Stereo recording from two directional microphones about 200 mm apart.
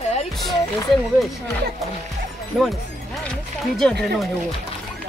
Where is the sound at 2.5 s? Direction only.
5° right (ahead or behind).